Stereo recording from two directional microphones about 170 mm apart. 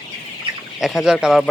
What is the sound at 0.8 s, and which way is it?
Speech, centre (ahead or behind).